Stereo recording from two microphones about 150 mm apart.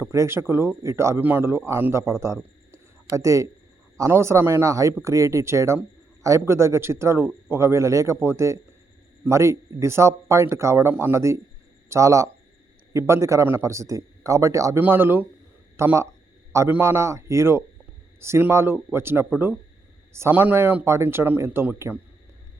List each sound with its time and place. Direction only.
0.0 s speech: 20° right (ahead or behind)